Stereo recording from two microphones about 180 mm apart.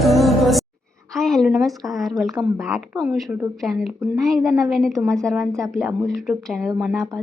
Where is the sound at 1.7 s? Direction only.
Centre (ahead or behind).